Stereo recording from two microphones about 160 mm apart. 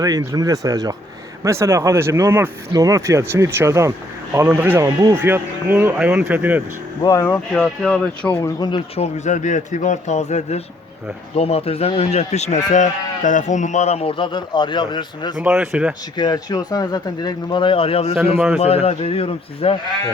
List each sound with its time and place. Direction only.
0.0 s speech: 20° right (ahead or behind)
7.0 s speech: 20° left (ahead or behind)
9.0 s speech: 45° left (ahead or behind); by 15.4 s 30° left (ahead or behind)
15.4 s speech: 5° right (ahead or behind)
16.1 s speech: 25° left (ahead or behind)
18.3 s speech: 5° right (ahead or behind)
18.6 s speech: 40° left (ahead or behind)